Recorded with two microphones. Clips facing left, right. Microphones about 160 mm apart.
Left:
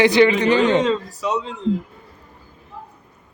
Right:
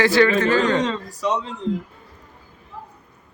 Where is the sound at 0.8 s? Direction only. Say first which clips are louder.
Left 2 dB; 5° left (ahead or behind).